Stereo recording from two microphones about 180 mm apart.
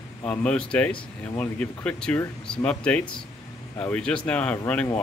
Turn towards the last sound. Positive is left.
turn(degrees=5)  # may be behind; listen again after turning